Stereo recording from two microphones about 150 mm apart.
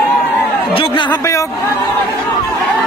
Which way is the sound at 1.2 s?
20° left (ahead or behind).